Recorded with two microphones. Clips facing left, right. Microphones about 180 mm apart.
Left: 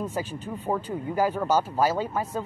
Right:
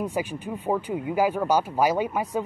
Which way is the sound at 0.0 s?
15° right (ahead or behind).